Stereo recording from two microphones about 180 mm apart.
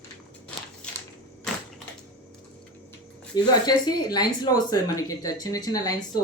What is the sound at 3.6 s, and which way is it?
Speech, 20° left (ahead or behind).